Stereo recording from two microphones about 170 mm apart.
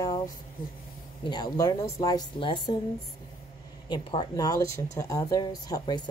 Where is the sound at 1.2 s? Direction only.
25° left (ahead or behind).